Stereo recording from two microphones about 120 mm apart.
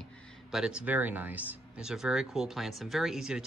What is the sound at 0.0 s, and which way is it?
Speech, 5° right (ahead or behind).